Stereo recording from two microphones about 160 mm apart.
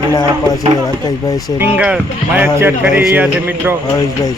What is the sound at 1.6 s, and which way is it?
Speech, 10° right (ahead or behind).